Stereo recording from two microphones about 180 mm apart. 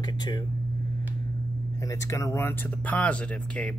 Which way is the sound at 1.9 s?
15° left (ahead or behind).